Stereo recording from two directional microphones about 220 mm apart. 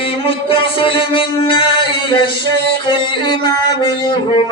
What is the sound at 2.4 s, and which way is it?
Music, 50° right (ahead or behind).